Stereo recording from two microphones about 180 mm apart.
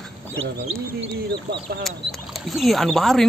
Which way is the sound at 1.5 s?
60° right (ahead or behind).